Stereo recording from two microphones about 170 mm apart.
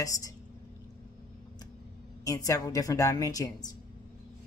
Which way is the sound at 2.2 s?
20° left (ahead or behind).